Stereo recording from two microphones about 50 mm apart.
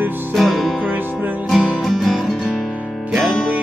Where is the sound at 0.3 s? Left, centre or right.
Centre.